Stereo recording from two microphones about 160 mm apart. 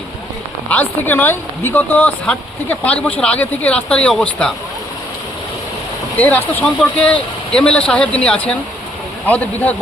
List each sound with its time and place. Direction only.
0.7 s speech: 10° left (ahead or behind)
6.1 s speech: 10° left (ahead or behind)